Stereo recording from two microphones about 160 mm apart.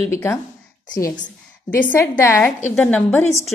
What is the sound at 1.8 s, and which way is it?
A woman's voice, 10° left (ahead or behind).